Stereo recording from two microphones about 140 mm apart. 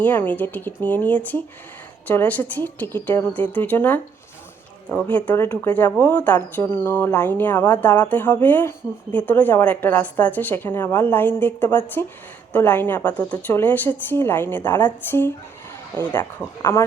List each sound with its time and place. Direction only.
0.0 s speech: 10° left (ahead or behind)